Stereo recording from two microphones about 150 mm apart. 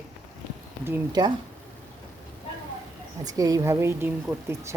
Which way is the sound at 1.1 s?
30° right (ahead or behind).